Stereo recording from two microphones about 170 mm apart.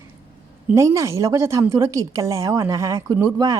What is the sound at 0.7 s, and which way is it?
A woman's voice, 15° right (ahead or behind).